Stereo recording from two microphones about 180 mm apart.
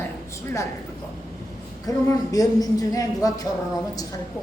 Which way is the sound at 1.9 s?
20° left (ahead or behind).